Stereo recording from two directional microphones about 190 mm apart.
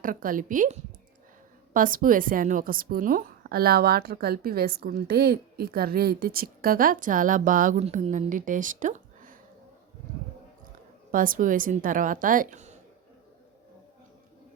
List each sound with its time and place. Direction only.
0.0 s a woman's voice: 45° right (ahead or behind)
11.1 s a woman's voice: 45° right (ahead or behind)